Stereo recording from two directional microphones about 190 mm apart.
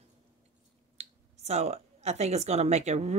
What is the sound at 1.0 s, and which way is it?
Speech, 35° right (ahead or behind).